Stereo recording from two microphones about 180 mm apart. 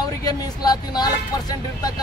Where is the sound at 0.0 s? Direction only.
20° left (ahead or behind).